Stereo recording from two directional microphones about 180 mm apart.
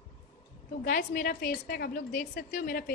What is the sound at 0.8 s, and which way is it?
A woman's voice, 55° left (ahead or behind).